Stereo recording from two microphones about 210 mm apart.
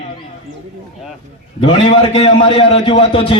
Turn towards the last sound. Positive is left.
turn(degrees=25)  # may be behind; listen again after turning